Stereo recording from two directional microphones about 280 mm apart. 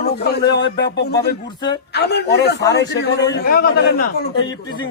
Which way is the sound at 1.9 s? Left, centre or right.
Left.